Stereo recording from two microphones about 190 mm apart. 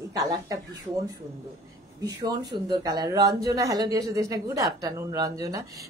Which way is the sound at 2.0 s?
20° right (ahead or behind).